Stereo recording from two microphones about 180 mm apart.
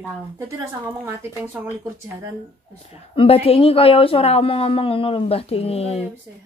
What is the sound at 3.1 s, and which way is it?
A woman's voice, 30° left (ahead or behind).